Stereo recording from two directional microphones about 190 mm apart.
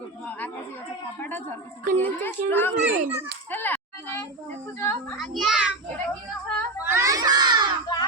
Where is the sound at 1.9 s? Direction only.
10° left (ahead or behind).